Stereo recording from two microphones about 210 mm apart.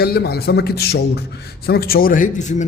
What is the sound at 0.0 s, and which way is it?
A man's voice, 50° left (ahead or behind).